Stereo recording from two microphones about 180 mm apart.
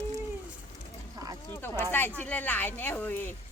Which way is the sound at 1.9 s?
10° left (ahead or behind).